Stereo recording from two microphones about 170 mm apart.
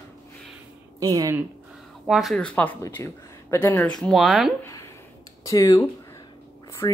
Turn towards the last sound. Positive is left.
turn(degrees=20)  # may be behind; listen again after turning